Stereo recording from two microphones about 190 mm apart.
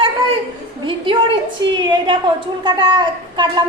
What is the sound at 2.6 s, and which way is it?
Speech, 25° right (ahead or behind).